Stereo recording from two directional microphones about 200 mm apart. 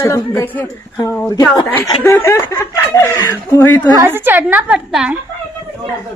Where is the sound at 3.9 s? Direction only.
15° right (ahead or behind).